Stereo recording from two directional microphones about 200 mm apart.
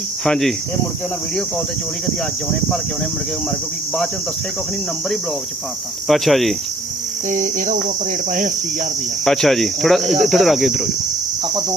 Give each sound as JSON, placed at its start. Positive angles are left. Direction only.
{"t": 0.3, "sound": "cricket", "side_deg": 0}
{"t": 6.1, "sound": "cricket", "side_deg": 0}
{"t": 7.3, "sound": "cricket", "side_deg": -40}
{"t": 9.2, "sound": "cricket", "side_deg": 0}